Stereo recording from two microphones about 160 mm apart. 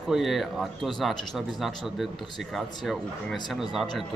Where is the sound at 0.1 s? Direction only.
Centre (ahead or behind).